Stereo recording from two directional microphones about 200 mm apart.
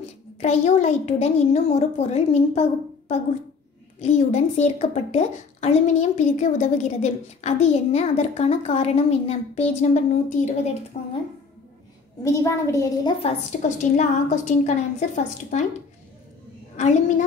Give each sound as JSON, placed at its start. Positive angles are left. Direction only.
{"t": 0.4, "sound": "a woman's voice", "side_deg": 35}
{"t": 12.2, "sound": "a child's voice", "side_deg": 15}
{"t": 13.2, "sound": "a woman's voice", "side_deg": 35}